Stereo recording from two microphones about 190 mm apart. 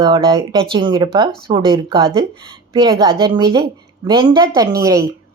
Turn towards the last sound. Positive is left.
turn(degrees=-20)  # may be behind; listen again after turning